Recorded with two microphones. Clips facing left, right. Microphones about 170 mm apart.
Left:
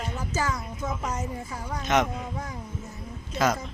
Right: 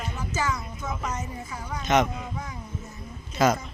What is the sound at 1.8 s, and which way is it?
Speech, centre (ahead or behind).